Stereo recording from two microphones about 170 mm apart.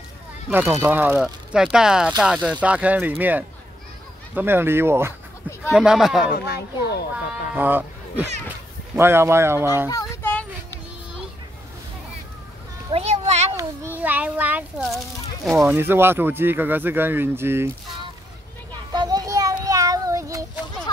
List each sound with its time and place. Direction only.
0.5 s speech: 10° right (ahead or behind)
5.8 s speech: centre (ahead or behind)
6.3 s speech: 70° left (ahead or behind)
7.5 s speech: 10° right (ahead or behind)
9.8 s a sound: 20° left (ahead or behind)
12.9 s a sound: 40° right (ahead or behind)
13.6 s speech: 10° right (ahead or behind)
15.6 s speech: 15° right (ahead or behind)
18.9 s children playing: 20° right (ahead or behind)
19.6 s child singing: 20° right (ahead or behind)